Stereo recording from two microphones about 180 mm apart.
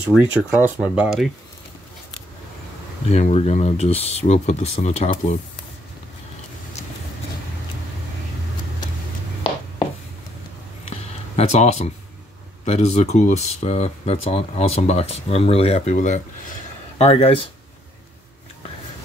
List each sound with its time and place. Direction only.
0.1 s speech: 5° right (ahead or behind)
3.1 s speech: 35° left (ahead or behind)
10.9 s a sound: 35° left (ahead or behind)
12.6 s speech: 35° left (ahead or behind)
17.1 s speech: 30° left (ahead or behind)